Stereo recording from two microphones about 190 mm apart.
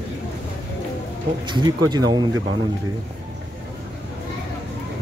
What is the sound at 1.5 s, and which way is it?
Speech, 20° right (ahead or behind).